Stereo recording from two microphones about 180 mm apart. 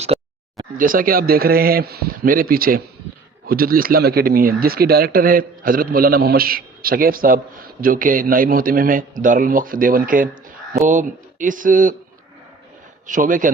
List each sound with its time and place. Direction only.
0.1 s a sound: 35° right (ahead or behind)
0.8 s a man's voice: 50° right (ahead or behind)
13.1 s speech: 45° right (ahead or behind)